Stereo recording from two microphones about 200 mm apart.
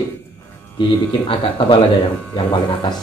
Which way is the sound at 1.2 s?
25° left (ahead or behind).